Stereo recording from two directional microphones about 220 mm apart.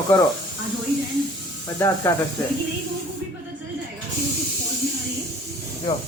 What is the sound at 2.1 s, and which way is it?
Speech, 10° left (ahead or behind).